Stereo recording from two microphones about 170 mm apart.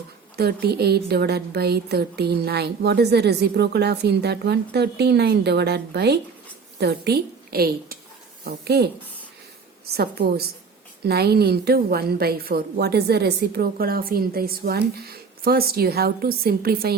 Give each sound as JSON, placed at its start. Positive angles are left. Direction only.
{"t": 0.3, "sound": "a woman's voice", "side_deg": -70}